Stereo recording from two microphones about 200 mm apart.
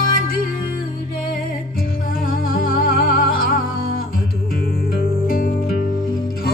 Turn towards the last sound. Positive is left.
turn(degrees=45)  # may be behind; listen again after turning